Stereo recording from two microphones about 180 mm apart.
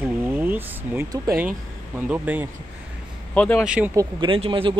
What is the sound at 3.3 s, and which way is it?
Speech, 5° left (ahead or behind).